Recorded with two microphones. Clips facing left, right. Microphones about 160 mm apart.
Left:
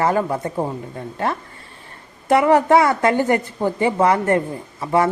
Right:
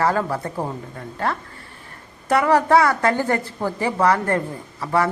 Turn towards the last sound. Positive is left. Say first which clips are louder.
# left 3 dB
turn(degrees=20)  # may be behind; listen again after turning